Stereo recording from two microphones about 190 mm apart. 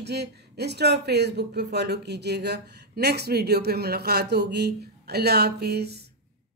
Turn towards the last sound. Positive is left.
turn(degrees=-60)  # may be behind; listen again after turning